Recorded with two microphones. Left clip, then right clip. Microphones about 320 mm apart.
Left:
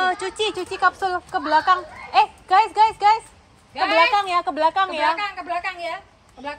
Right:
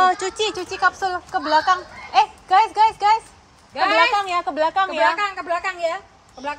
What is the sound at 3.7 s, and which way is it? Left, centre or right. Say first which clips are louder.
Speech: right 2 dB; right.